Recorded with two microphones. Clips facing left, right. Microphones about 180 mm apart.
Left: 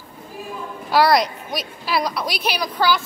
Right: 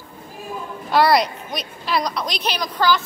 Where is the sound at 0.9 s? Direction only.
Centre (ahead or behind).